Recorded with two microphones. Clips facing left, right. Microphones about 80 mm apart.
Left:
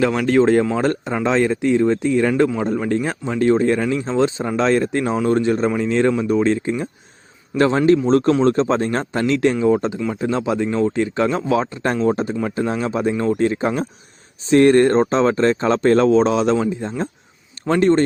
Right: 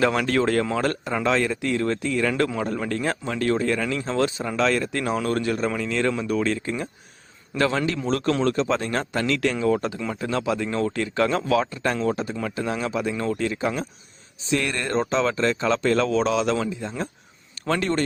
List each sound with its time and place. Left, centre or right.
0.0 s a man's voice: centre
0.3 s speech: left
2.6 s a man's voice: centre; by 18.0 s left